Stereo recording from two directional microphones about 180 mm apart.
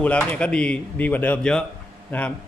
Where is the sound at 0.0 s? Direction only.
5° left (ahead or behind).